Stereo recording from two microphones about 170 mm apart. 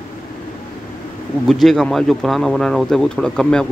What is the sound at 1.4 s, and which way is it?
Speech, centre (ahead or behind).